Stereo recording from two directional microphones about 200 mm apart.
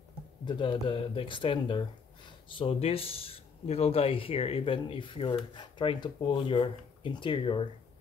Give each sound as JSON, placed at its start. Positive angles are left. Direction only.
{"t": 0.5, "sound": "speech", "side_deg": 25}